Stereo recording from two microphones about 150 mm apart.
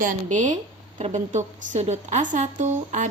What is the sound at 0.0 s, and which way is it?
A woman's voice, 55° right (ahead or behind).